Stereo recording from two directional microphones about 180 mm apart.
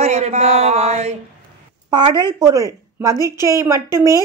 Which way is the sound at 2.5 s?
20° right (ahead or behind).